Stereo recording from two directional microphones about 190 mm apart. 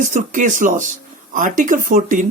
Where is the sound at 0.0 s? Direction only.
40° right (ahead or behind).